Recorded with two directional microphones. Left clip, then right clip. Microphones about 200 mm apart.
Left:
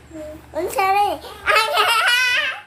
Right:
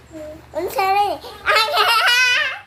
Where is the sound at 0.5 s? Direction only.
5° right (ahead or behind).